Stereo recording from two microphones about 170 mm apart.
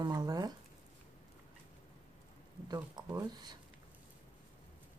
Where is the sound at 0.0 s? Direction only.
20° right (ahead or behind).